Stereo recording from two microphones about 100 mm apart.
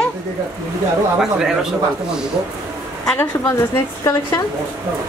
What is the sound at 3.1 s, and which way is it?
A woman's voice, 30° left (ahead or behind).